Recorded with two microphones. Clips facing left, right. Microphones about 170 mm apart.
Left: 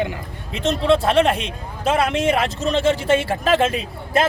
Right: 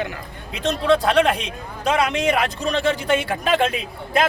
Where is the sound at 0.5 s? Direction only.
Centre (ahead or behind).